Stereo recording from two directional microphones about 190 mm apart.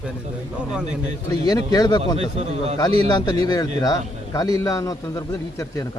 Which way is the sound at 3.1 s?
20° left (ahead or behind).